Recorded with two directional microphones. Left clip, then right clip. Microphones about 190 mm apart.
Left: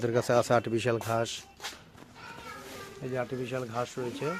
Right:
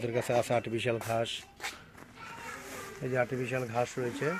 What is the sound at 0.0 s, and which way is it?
Speech, 25° left (ahead or behind).